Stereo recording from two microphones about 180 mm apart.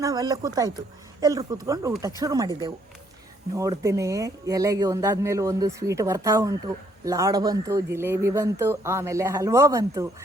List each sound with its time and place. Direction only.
0.0 s speech: 20° right (ahead or behind)